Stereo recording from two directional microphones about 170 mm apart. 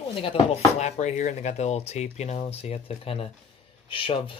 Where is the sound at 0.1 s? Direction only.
30° left (ahead or behind).